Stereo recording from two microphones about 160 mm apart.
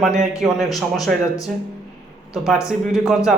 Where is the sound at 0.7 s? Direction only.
20° left (ahead or behind).